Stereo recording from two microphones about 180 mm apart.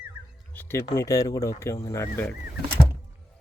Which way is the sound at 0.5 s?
10° left (ahead or behind).